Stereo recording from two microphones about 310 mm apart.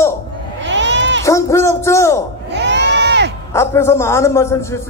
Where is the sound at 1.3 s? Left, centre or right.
Centre.